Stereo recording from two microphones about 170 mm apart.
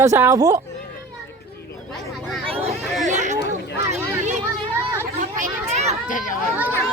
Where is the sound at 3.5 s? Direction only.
40° right (ahead or behind).